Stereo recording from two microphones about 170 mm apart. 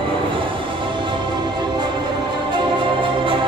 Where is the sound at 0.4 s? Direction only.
30° right (ahead or behind).